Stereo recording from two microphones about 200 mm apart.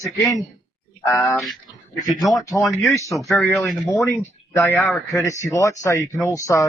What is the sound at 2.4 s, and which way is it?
Speech, 15° left (ahead or behind).